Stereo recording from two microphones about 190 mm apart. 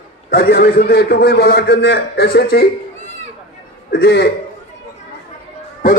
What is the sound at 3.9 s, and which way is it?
Speech, 60° left (ahead or behind).